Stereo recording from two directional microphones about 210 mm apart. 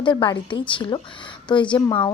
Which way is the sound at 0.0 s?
20° left (ahead or behind).